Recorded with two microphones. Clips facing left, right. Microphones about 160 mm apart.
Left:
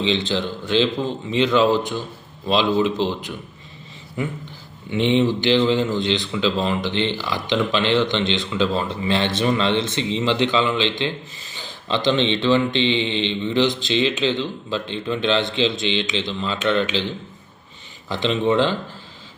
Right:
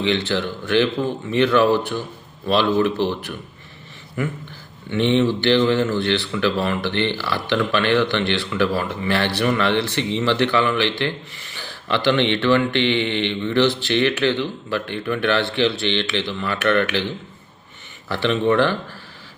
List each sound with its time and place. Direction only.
0.0 s speech: 15° left (ahead or behind)
4.2 s a sound: 20° left (ahead or behind)
4.9 s speech: 15° left (ahead or behind)
18.1 s speech: 20° left (ahead or behind)